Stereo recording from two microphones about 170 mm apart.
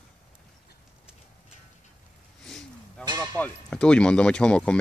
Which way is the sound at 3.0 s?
20° right (ahead or behind).